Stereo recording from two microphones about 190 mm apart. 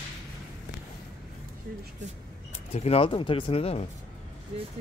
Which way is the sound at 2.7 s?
35° left (ahead or behind).